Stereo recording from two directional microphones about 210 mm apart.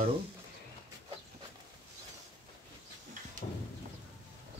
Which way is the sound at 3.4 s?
40° left (ahead or behind).